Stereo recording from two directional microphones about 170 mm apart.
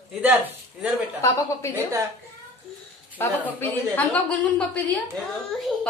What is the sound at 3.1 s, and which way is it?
A woman's voice, 10° left (ahead or behind).